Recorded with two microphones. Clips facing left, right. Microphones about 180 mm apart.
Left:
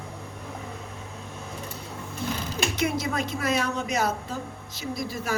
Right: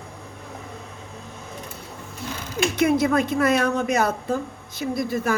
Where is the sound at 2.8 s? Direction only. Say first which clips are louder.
Right 9 dB; 55° right (ahead or behind).